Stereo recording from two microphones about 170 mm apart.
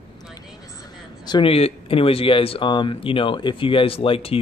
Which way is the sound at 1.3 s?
30° left (ahead or behind).